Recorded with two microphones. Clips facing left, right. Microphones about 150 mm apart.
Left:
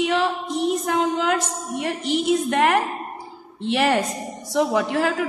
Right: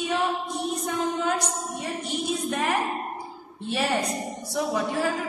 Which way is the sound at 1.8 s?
75° left (ahead or behind).